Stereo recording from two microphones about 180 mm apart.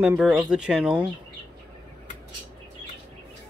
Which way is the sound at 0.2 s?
Centre (ahead or behind).